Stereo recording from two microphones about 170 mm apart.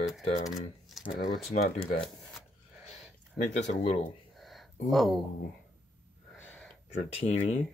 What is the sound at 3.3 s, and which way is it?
Speech, 45° left (ahead or behind).